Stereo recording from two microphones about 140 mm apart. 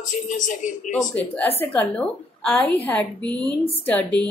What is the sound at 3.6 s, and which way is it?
Speech, 45° left (ahead or behind).